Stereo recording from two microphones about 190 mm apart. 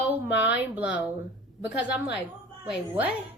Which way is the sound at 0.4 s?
10° right (ahead or behind).